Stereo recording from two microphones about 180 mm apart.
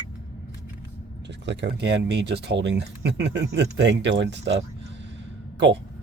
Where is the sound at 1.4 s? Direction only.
75° right (ahead or behind).